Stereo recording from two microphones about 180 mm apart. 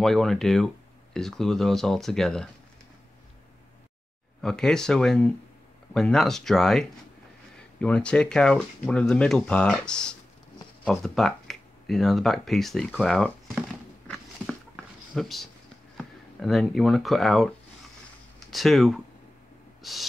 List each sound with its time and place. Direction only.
0.0 s speech: centre (ahead or behind)
4.4 s speech: 5° left (ahead or behind)
14.4 s a sound: centre (ahead or behind)
16.0 s speech: centre (ahead or behind)
18.5 s speech: centre (ahead or behind)
19.8 s owl: centre (ahead or behind)